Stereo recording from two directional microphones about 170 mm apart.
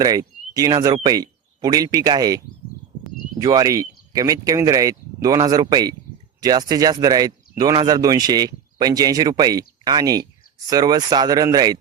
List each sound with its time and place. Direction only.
0.0 s speech: 20° right (ahead or behind)